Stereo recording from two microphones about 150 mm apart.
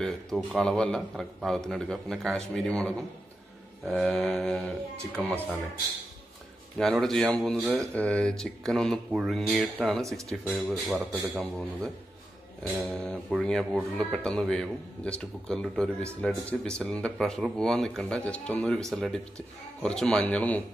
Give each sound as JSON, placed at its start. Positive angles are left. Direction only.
{"t": 0.0, "sound": "speech", "side_deg": 5}
{"t": 6.8, "sound": "speech", "side_deg": 5}
{"t": 10.0, "sound": "speech", "side_deg": -20}
{"t": 10.5, "sound": "speech", "side_deg": -5}